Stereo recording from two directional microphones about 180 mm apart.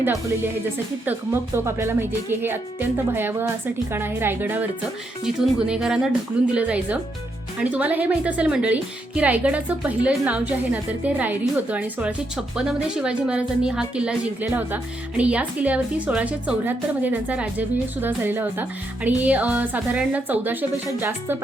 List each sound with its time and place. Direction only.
0.0 s a woman's voice: 15° right (ahead or behind)